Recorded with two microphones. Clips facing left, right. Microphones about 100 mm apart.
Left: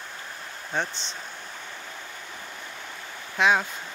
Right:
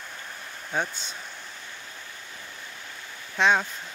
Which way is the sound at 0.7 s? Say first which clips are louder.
Even; 5° right (ahead or behind).